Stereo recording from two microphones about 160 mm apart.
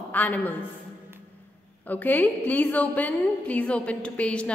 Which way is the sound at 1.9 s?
10° left (ahead or behind).